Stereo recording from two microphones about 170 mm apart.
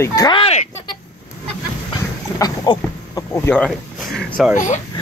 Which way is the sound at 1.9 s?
20° left (ahead or behind).